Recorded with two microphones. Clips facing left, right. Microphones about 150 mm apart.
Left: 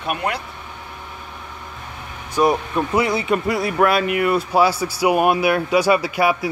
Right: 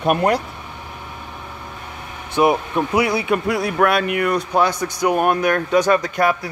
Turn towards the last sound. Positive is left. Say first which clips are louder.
# even
turn(degrees=10)  # may be behind; listen again after turning